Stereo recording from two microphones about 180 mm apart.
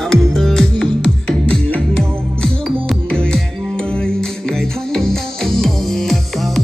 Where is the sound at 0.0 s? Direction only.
Centre (ahead or behind).